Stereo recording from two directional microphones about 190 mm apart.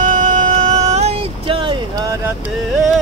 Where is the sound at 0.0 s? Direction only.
40° right (ahead or behind); by 2.3 s 20° right (ahead or behind).